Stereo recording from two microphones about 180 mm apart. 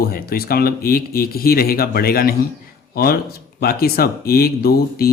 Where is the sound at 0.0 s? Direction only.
55° left (ahead or behind).